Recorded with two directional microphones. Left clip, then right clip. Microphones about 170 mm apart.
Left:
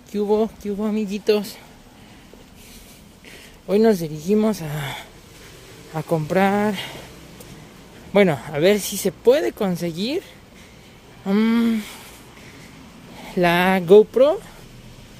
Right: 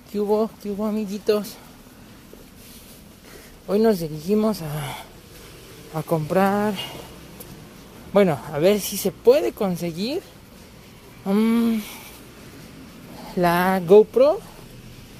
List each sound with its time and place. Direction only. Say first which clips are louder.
0.1 s speech: left 1 dB; 15° left (ahead or behind)
3.6 s speech: left 2 dB; 25° left (ahead or behind)
8.1 s speech: left 1 dB; 25° left (ahead or behind)
11.2 s speech: left 1 dB; 15° left (ahead or behind)
13.3 s speech: left 2 dB; 25° left (ahead or behind)